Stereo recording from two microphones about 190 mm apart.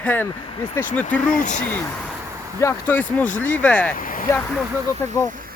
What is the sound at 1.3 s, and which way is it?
Speech, 40° left (ahead or behind).